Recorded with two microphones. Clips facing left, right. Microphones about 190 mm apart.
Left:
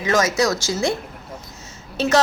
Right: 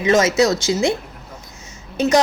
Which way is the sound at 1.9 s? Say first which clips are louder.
Right 2 dB; 15° right (ahead or behind).